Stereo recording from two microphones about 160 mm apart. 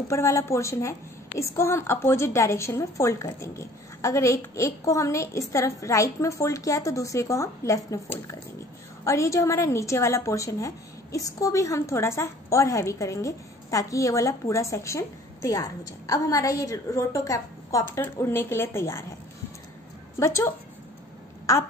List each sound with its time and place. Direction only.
0.1 s a woman's voice: 20° left (ahead or behind)
20.2 s a woman's voice: 15° left (ahead or behind)